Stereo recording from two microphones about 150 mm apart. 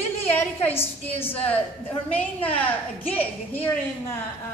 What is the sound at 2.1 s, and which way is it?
A woman's voice, 10° left (ahead or behind).